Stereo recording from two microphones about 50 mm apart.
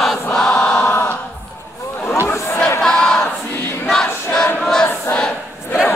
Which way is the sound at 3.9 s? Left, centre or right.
Centre.